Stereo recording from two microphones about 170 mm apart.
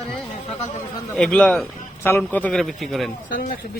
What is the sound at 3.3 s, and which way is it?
Speech, 55° left (ahead or behind).